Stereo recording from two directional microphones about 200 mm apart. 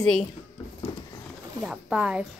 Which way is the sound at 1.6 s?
5° right (ahead or behind).